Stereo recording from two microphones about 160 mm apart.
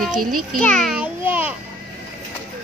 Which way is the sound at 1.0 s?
10° right (ahead or behind).